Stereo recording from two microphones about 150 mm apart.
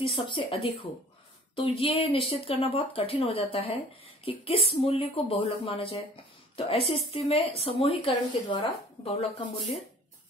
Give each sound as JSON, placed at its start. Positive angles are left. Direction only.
{"t": 0.0, "sound": "a woman's voice", "side_deg": 35}